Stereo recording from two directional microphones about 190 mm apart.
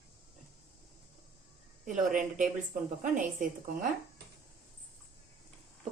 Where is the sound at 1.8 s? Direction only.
45° right (ahead or behind).